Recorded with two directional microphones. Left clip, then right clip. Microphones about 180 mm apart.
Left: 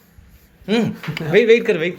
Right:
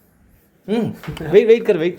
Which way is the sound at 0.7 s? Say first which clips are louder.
Left 2 dB; 20° right (ahead or behind).